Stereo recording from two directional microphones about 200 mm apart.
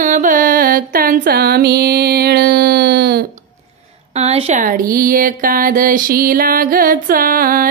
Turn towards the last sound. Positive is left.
turn(degrees=-45)  # may be behind; listen again after turning